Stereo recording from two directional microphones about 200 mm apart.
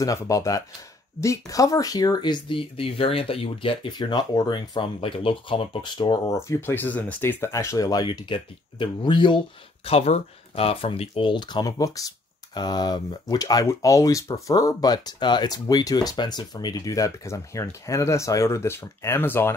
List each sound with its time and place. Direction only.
0.0 s speech: 15° left (ahead or behind)